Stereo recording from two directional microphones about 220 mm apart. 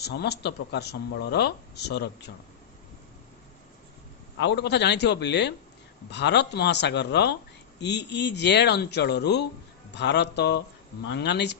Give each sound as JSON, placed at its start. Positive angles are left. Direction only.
{"t": 0.0, "sound": "speech", "side_deg": 45}
{"t": 4.4, "sound": "speech", "side_deg": 50}